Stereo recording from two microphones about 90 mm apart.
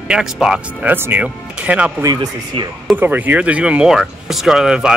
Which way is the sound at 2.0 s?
50° right (ahead or behind).